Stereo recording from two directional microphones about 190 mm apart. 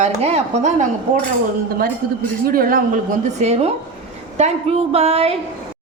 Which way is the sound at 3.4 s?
35° right (ahead or behind).